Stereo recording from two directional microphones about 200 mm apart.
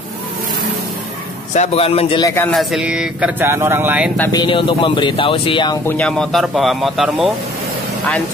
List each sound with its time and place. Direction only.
1.5 s speech: 35° left (ahead or behind)
2.3 s speech: 5° left (ahead or behind)
4.3 s speech: 25° left (ahead or behind)
5.9 s speech: 5° left (ahead or behind)